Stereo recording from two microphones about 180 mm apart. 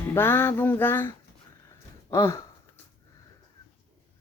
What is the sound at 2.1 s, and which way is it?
Speech, 15° left (ahead or behind).